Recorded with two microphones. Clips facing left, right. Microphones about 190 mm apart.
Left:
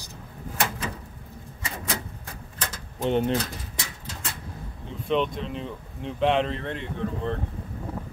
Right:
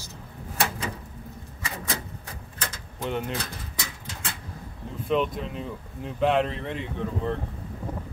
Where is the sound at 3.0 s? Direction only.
25° left (ahead or behind).